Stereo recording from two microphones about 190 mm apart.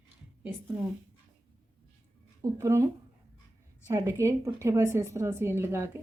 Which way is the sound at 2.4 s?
15° right (ahead or behind).